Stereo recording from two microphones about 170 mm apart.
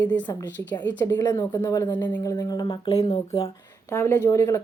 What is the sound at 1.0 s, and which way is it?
A woman's voice, 20° left (ahead or behind).